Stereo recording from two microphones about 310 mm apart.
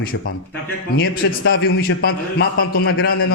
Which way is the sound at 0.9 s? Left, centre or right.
Left.